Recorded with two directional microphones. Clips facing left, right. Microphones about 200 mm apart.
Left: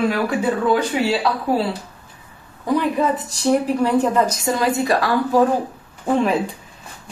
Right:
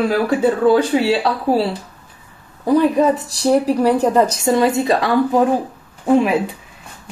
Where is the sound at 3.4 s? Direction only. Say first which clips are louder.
Right 3 dB; 35° right (ahead or behind).